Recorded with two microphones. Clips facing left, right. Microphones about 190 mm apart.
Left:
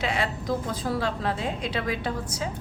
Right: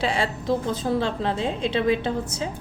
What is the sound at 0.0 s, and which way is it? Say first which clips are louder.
A woman's voice: right 3 dB; 30° right (ahead or behind).